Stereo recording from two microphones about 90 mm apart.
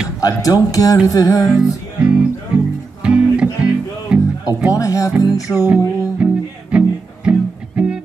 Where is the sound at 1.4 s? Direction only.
10° right (ahead or behind).